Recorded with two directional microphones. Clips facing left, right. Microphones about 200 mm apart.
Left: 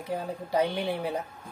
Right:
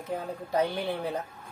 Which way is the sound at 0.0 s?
10° left (ahead or behind).